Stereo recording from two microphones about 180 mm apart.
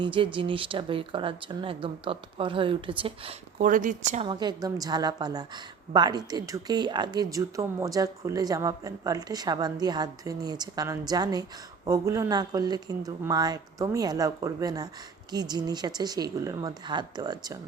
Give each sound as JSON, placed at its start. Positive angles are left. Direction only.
{"t": 0.0, "sound": "a woman's voice", "side_deg": -30}
{"t": 3.6, "sound": "speech", "side_deg": -45}
{"t": 4.3, "sound": "a woman's voice", "side_deg": -25}